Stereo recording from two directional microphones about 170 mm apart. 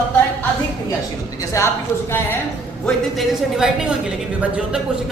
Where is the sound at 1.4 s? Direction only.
20° left (ahead or behind).